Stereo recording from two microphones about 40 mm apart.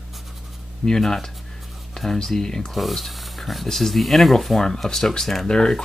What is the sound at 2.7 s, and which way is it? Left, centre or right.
Speech, centre.